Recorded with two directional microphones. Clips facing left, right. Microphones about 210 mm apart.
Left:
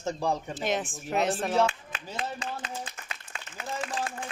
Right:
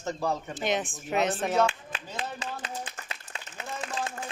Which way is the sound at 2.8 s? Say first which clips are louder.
Right 1 dB; 25° right (ahead or behind).